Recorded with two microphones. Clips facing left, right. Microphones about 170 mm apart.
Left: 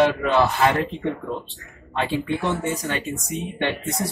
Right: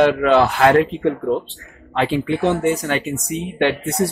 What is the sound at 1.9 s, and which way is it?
Speech, 90° right.